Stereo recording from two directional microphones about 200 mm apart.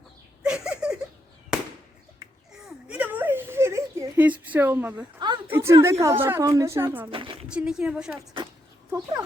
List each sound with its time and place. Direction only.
0.4 s a sound: 5° right (ahead or behind)
2.5 s a sound: 5° right (ahead or behind)
5.5 s a woman's voice: 10° right (ahead or behind)
7.1 s speech: 25° right (ahead or behind)
7.4 s speech: 5° right (ahead or behind)
8.9 s a woman's voice: 15° right (ahead or behind)